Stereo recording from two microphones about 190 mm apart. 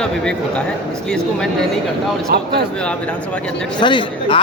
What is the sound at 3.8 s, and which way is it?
Speech, 25° left (ahead or behind).